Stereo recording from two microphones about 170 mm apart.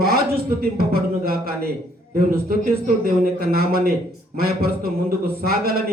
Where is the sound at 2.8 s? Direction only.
60° right (ahead or behind).